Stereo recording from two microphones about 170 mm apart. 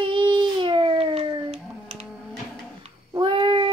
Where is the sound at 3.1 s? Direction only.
30° right (ahead or behind).